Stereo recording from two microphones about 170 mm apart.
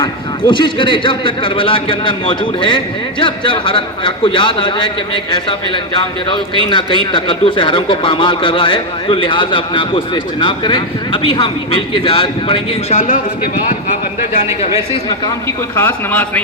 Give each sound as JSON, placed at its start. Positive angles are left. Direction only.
{"t": 0.0, "sound": "a man's voice", "side_deg": 25}
{"t": 15.7, "sound": "speech", "side_deg": 10}